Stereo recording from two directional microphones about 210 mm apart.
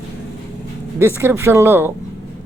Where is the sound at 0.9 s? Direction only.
10° right (ahead or behind).